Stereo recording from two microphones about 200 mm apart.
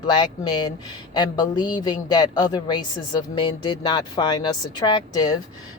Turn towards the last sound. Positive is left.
turn(degrees=20)  # may be behind; listen again after turning